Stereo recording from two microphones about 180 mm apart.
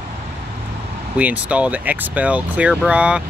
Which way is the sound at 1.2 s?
10° right (ahead or behind).